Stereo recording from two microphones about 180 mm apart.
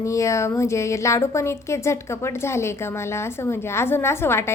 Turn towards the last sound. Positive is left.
turn(degrees=15)  # may be behind; listen again after turning